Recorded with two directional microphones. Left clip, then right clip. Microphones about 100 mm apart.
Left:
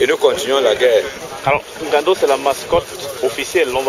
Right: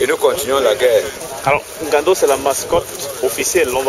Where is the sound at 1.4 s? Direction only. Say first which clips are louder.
Right 1 dB; 35° right (ahead or behind).